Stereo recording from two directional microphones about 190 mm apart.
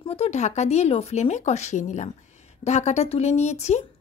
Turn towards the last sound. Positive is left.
turn(degrees=35)  # may be behind; listen again after turning